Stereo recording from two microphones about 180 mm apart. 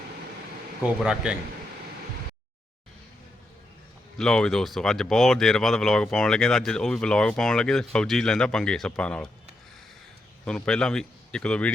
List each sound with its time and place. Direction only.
0.8 s speech: 5° right (ahead or behind)
4.2 s speech: 5° left (ahead or behind)
10.4 s speech: 5° left (ahead or behind)